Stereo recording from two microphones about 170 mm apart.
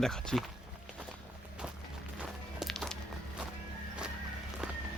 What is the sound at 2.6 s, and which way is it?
Music, centre (ahead or behind).